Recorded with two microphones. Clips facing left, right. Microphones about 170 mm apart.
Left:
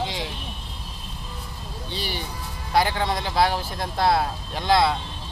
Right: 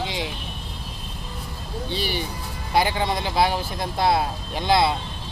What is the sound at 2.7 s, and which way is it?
Speech, 15° right (ahead or behind).